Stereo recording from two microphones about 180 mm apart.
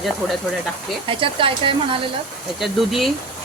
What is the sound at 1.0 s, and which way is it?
Speech, 30° right (ahead or behind).